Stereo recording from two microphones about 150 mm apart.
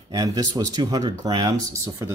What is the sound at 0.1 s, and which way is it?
Speech, 25° right (ahead or behind).